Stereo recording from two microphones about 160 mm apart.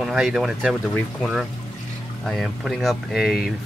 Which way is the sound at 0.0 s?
Centre (ahead or behind).